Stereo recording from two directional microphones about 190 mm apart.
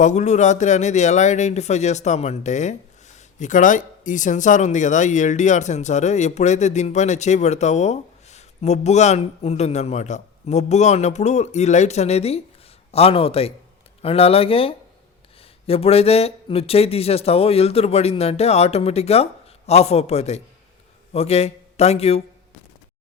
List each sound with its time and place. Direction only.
0.0 s a man's voice: 40° left (ahead or behind)